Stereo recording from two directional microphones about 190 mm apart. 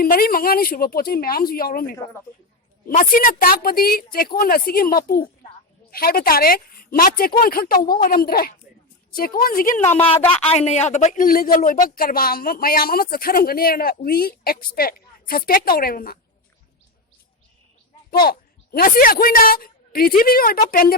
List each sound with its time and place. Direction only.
0.0 s speech: 50° left (ahead or behind)
10.4 s speech: 30° left (ahead or behind); by 16.1 s 50° left (ahead or behind)
18.1 s a woman's voice: 55° left (ahead or behind)